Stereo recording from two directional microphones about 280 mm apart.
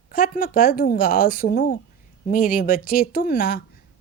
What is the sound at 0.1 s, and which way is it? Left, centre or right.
A woman's voice, left.